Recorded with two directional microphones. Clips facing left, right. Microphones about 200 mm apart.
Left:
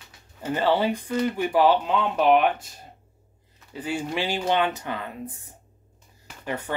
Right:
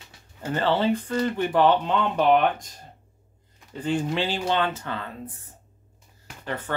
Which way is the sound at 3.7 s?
10° left (ahead or behind).